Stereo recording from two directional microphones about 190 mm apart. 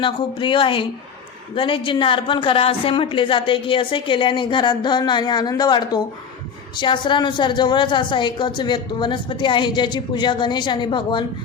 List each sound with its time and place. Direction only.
0.0 s a woman's voice: 25° left (ahead or behind)